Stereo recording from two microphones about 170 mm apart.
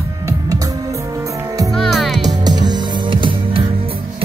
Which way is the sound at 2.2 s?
25° right (ahead or behind).